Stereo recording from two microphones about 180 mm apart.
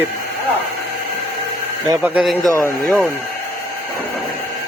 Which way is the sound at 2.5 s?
15° left (ahead or behind).